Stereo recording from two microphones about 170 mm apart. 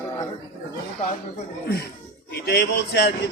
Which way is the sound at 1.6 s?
70° left (ahead or behind).